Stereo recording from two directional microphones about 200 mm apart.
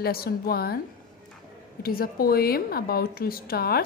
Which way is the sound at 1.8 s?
50° left (ahead or behind).